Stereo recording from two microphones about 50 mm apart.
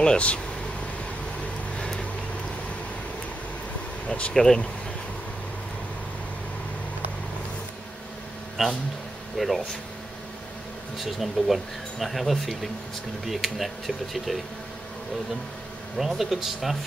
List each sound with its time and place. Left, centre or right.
0.0 s speech: left
1.8 s vehicle: centre
4.3 s speech: centre
8.6 s speech: centre
11.0 s speech: centre
16.0 s speech: centre